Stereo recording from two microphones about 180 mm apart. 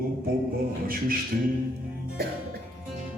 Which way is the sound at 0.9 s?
55° right (ahead or behind).